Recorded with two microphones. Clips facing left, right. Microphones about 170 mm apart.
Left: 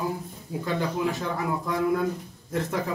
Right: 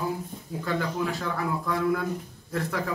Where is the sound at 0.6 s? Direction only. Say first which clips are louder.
Left 2 dB; 20° left (ahead or behind).